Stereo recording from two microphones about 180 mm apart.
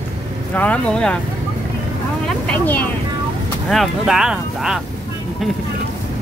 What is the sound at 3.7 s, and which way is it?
Speech, centre (ahead or behind).